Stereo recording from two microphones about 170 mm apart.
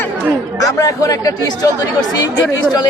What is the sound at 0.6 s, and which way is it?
Speech, 20° left (ahead or behind).